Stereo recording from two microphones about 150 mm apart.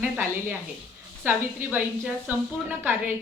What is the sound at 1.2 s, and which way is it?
A woman's voice, 10° right (ahead or behind).